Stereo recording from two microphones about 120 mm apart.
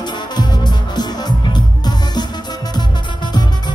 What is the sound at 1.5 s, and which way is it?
Music, 35° left (ahead or behind).